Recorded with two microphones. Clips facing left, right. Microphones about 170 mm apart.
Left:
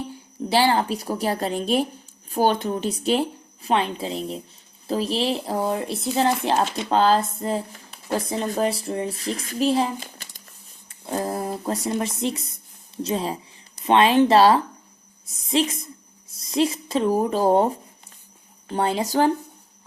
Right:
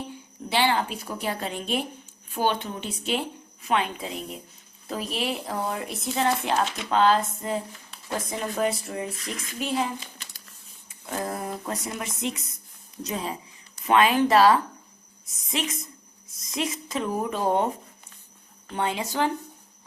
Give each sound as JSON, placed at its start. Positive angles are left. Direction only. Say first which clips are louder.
{"t": 0.5, "sound": "speech", "louder": "left 4 dB", "side_deg": 35}